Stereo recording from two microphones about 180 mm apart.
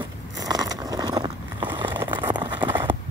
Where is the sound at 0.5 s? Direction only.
20° right (ahead or behind).